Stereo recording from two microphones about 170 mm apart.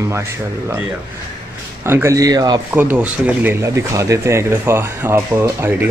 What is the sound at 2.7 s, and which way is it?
A man's voice, 10° right (ahead or behind).